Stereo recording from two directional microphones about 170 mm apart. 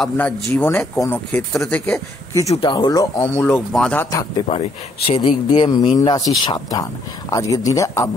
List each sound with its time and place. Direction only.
0.0 s speech: 10° left (ahead or behind)
2.5 s speech: 30° left (ahead or behind)
4.5 s speech: 35° left (ahead or behind); by 8.1 s 20° left (ahead or behind)